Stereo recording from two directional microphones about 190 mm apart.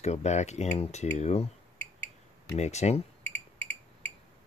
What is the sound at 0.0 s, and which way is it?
Speech, 35° left (ahead or behind).